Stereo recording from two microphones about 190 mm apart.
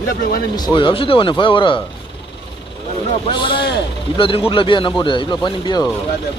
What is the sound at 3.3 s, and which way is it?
Speech, 25° left (ahead or behind).